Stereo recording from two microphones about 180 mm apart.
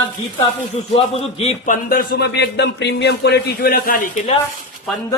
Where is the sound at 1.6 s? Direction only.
50° left (ahead or behind).